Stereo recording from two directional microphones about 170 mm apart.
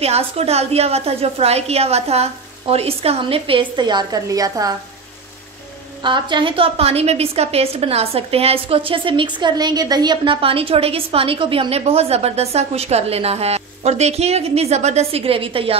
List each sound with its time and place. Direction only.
0.0 s a woman's voice: 40° right (ahead or behind); by 4.7 s 20° right (ahead or behind)
6.0 s a woman's voice: 25° right (ahead or behind)